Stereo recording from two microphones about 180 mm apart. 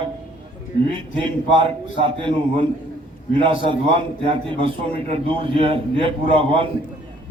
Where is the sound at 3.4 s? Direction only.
30° right (ahead or behind).